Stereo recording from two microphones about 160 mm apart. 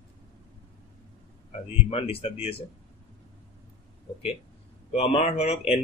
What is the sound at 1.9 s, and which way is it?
Speech, 35° left (ahead or behind).